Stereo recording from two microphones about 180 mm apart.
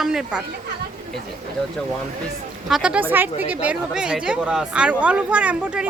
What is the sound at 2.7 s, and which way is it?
Speech, 5° right (ahead or behind).